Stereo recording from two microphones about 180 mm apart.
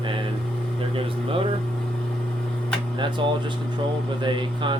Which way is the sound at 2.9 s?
25° right (ahead or behind).